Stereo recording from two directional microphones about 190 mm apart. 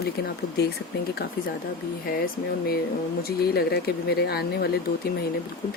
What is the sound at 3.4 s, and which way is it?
Speech, 55° left (ahead or behind).